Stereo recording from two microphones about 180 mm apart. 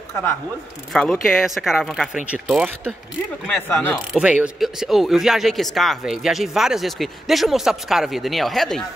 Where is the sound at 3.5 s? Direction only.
10° left (ahead or behind).